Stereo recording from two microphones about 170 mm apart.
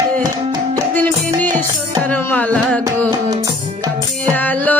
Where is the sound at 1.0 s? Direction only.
10° left (ahead or behind).